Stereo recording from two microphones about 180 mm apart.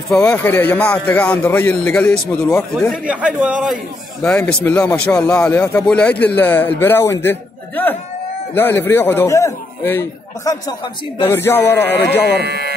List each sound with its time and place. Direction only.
0.1 s a man's voice: 5° left (ahead or behind)
2.9 s a man's voice: 5° right (ahead or behind); by 12.2 s 10° left (ahead or behind)
12.4 s speech: 60° right (ahead or behind)